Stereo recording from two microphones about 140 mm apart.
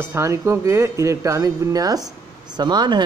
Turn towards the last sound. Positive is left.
turn(degrees=-30)  # may be behind; listen again after turning